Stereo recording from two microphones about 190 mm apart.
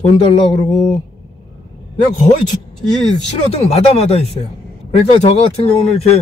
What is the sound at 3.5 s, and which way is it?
Speech, 35° left (ahead or behind).